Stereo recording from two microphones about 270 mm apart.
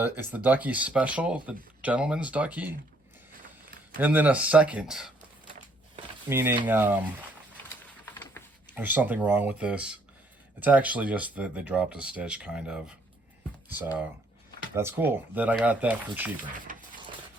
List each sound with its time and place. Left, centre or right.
0.0 s speech: centre
3.9 s speech: centre
6.2 s speech: centre
8.0 s a sound: centre
8.7 s speech: centre
16.4 s speech: right